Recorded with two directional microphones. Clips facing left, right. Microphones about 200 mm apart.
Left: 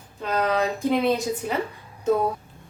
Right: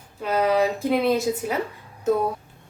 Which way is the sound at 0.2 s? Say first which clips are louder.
Right 3 dB; 10° right (ahead or behind).